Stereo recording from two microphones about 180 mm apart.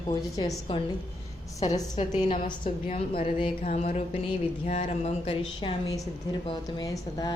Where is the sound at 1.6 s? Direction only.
40° left (ahead or behind).